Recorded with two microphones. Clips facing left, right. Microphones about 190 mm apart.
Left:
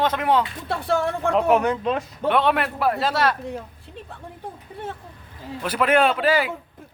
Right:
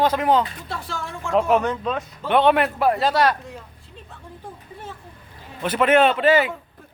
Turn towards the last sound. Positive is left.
turn(degrees=5)  # may be behind; listen again after turning